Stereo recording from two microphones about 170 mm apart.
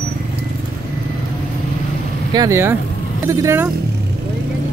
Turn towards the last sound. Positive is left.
turn(degrees=-15)  # may be behind; listen again after turning